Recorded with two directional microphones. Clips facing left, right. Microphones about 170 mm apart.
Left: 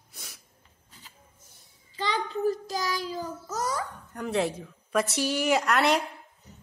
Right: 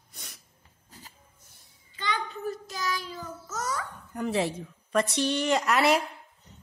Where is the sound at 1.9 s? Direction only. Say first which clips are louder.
Left 3 dB; 35° left (ahead or behind).